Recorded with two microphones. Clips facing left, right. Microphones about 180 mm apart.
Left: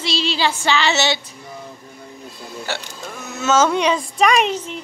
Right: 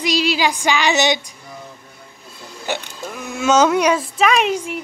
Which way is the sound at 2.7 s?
15° right (ahead or behind).